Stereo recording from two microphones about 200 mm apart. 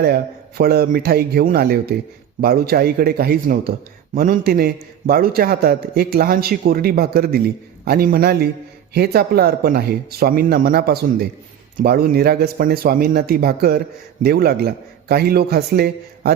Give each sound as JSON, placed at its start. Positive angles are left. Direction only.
{"t": 0.0, "sound": "speech", "side_deg": -50}